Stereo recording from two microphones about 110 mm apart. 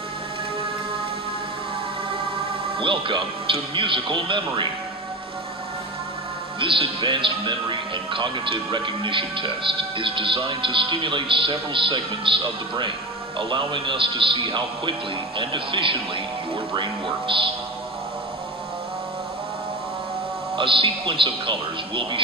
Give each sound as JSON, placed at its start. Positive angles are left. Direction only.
{"t": 2.8, "sound": "speech", "side_deg": -50}
{"t": 6.6, "sound": "speech", "side_deg": -50}
{"t": 20.5, "sound": "speech", "side_deg": -50}